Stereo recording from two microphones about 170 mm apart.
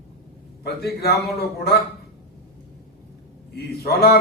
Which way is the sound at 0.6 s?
70° left (ahead or behind).